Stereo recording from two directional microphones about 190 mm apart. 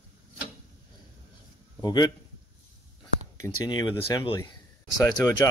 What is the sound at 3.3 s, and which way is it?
Speech, 20° left (ahead or behind).